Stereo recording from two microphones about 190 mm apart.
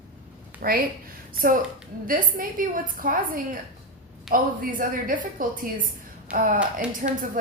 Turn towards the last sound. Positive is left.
turn(degrees=-45)  # may be behind; listen again after turning